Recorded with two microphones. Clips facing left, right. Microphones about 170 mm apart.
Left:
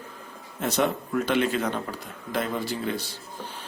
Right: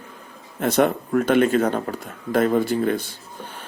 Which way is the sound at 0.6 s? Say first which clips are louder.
Right 6 dB; 55° right (ahead or behind).